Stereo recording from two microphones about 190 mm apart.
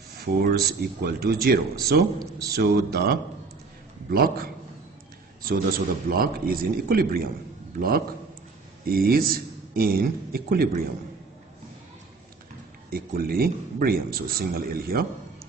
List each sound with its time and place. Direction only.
0.2 s a man's voice: 55° right (ahead or behind)
8.8 s speech: 50° right (ahead or behind)
12.9 s a man's voice: 50° right (ahead or behind)